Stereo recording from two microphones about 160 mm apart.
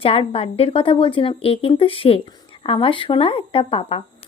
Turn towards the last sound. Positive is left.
turn(degrees=35)  # may be behind; listen again after turning